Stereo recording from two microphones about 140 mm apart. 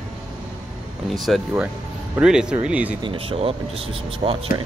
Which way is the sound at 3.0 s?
40° right (ahead or behind).